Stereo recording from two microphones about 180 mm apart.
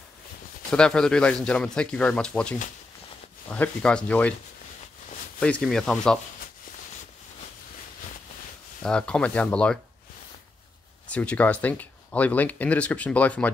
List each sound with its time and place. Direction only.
0.7 s speech: 5° left (ahead or behind)
5.4 s speech: 5° left (ahead or behind)
8.8 s speech: 5° left (ahead or behind)
11.1 s speech: 10° left (ahead or behind)